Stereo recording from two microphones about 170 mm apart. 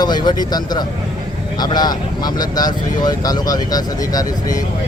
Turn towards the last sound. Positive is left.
turn(degrees=20)  # may be behind; listen again after turning